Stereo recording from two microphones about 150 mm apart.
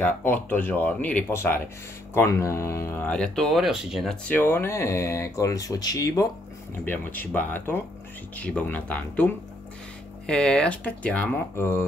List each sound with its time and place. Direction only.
0.0 s speech: 15° left (ahead or behind)
6.8 s speech: 10° left (ahead or behind)